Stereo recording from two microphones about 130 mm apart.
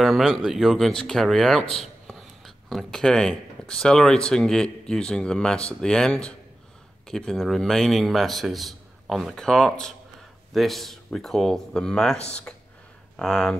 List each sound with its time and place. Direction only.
0.0 s speech: 5° right (ahead or behind)
12.2 s speech: 55° left (ahead or behind)
13.1 s speech: 5° left (ahead or behind)